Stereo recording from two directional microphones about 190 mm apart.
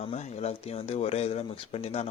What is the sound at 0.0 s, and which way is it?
A man's voice, 35° left (ahead or behind).